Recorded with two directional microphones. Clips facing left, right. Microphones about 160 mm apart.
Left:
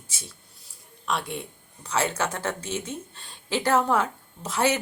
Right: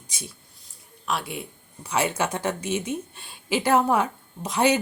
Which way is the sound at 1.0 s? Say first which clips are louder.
Even; 5° right (ahead or behind).